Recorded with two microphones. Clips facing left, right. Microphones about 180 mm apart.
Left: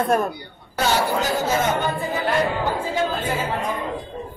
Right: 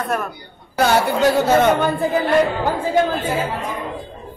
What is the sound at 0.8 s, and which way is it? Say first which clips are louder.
A woman's voice: right 5 dB; 65° right (ahead or behind).